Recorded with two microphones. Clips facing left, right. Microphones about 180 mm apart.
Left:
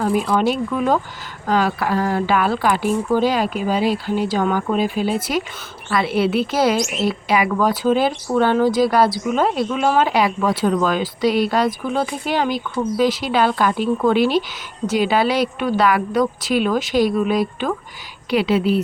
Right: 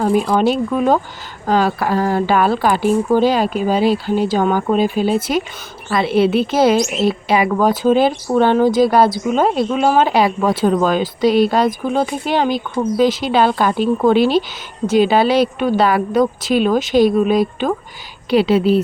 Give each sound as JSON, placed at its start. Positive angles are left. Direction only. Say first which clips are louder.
{"t": 0.0, "sound": "a woman's voice", "louder": "right 3 dB", "side_deg": -30}